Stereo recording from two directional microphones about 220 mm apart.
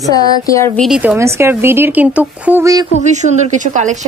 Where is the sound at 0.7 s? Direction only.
Centre (ahead or behind).